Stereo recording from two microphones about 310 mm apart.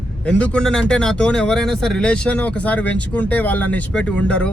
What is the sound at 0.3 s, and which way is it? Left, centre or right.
Speech, centre.